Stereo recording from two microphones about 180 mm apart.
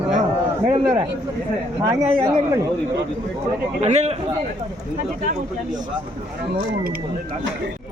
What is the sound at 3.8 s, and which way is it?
Speech, 40° right (ahead or behind).